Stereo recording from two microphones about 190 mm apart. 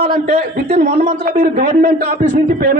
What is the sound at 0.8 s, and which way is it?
A man's voice, 50° right (ahead or behind).